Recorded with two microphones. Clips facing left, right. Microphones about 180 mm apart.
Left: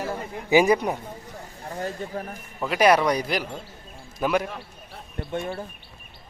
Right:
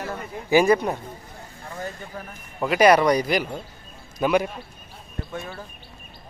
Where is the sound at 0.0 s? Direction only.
30° left (ahead or behind).